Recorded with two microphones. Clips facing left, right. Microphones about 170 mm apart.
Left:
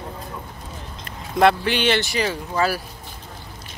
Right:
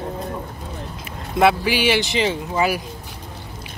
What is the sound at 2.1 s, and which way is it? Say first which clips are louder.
Speech: right 3 dB; 20° right (ahead or behind).